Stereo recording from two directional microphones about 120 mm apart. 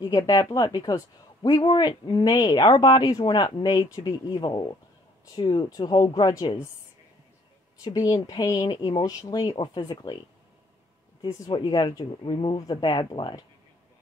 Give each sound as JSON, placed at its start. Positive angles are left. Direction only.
{"t": 0.0, "sound": "a woman's voice", "side_deg": 30}
{"t": 7.8, "sound": "speech", "side_deg": 30}
{"t": 11.2, "sound": "a woman's voice", "side_deg": 25}
{"t": 11.5, "sound": "speech", "side_deg": 35}